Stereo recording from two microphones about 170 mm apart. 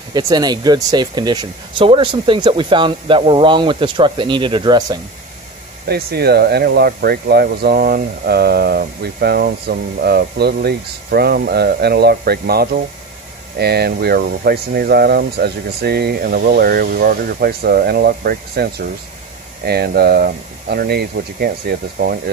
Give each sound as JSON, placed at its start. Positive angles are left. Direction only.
{"t": 0.1, "sound": "speech", "side_deg": -25}
{"t": 5.9, "sound": "speech", "side_deg": -70}